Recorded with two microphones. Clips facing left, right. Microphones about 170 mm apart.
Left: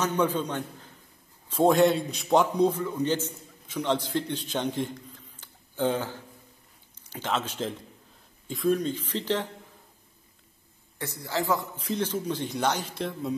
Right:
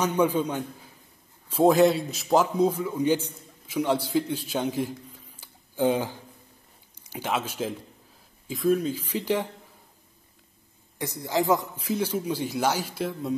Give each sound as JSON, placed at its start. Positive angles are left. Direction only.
{"t": 0.0, "sound": "a man's voice", "side_deg": -10}
{"t": 11.0, "sound": "speech", "side_deg": -15}